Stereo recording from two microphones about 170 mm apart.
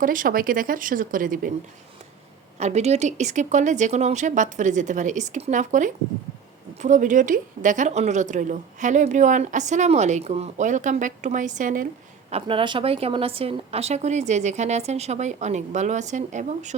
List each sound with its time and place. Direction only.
0.0 s a woman's voice: 55° right (ahead or behind)
2.6 s a woman's voice: 40° right (ahead or behind)
12.3 s a woman's voice: 30° right (ahead or behind)